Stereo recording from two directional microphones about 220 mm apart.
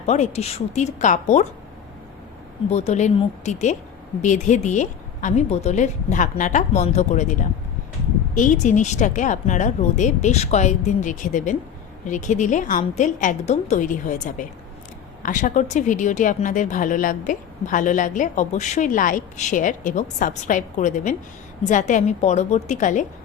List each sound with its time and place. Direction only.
0.0 s a woman's voice: 30° left (ahead or behind)
2.6 s a woman's voice: 30° left (ahead or behind)
8.4 s a woman's voice: 35° left (ahead or behind)